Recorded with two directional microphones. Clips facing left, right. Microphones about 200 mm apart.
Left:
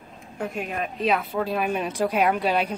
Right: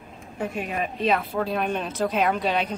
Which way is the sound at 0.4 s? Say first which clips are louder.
Right 1 dB; 5° right (ahead or behind).